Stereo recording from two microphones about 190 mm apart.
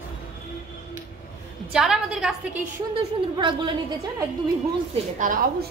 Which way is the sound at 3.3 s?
25° right (ahead or behind).